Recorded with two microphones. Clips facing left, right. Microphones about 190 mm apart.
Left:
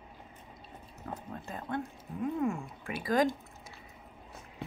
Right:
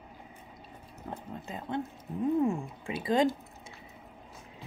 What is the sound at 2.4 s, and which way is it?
Speech, 30° right (ahead or behind).